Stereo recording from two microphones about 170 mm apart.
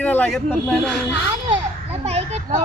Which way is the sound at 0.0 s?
10° left (ahead or behind).